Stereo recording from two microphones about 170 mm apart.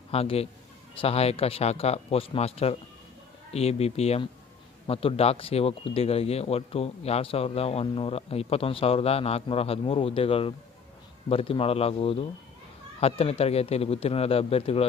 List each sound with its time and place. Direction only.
0.1 s speech: 35° left (ahead or behind)